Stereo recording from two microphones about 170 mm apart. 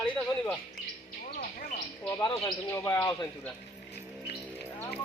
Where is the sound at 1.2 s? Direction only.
45° left (ahead or behind).